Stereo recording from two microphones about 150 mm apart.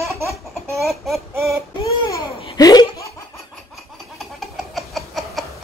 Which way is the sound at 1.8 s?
20° left (ahead or behind).